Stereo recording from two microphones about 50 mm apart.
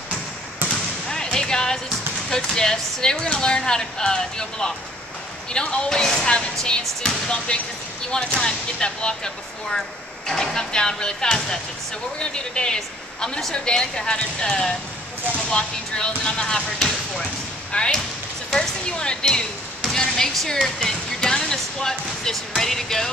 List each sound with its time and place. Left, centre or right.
1.1 s music: centre
2.2 s speech: centre
6.8 s speech: centre
7.2 s speech: left